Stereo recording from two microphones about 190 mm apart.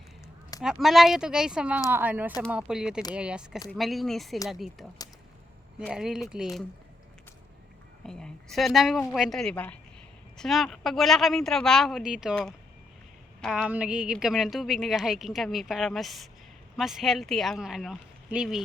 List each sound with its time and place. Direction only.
0.6 s a woman's voice: centre (ahead or behind)
5.9 s a woman's voice: centre (ahead or behind)
8.0 s a woman's voice: 5° left (ahead or behind)